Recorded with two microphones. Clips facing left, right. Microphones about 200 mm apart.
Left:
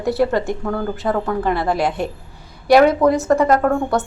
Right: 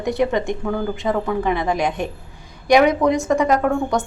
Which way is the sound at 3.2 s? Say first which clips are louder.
Left 2 dB; 15° right (ahead or behind).